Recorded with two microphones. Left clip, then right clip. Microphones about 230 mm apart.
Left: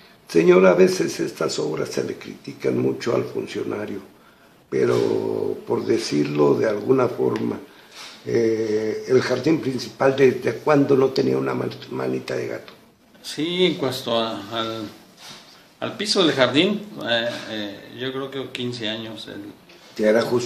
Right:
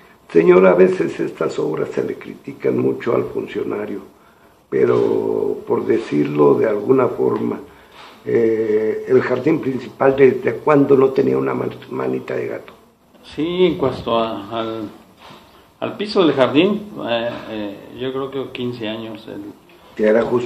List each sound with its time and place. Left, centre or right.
0.3 s speech: left